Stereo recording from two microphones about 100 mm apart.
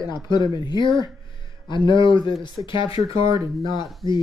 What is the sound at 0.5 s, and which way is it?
Speech, 45° left (ahead or behind).